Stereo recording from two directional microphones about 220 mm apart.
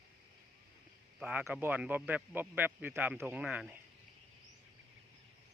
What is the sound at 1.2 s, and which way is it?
Speech, 10° right (ahead or behind).